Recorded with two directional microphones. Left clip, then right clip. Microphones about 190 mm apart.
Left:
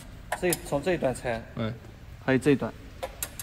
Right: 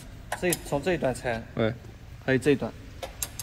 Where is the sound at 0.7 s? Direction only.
55° left (ahead or behind).